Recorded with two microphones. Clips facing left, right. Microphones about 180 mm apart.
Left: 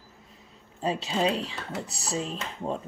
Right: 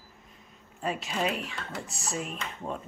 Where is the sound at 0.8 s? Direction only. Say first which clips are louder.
Left 4 dB; 30° left (ahead or behind).